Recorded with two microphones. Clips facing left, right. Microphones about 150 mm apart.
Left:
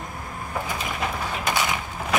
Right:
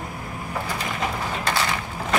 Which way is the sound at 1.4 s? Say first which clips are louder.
Even; 15° left (ahead or behind).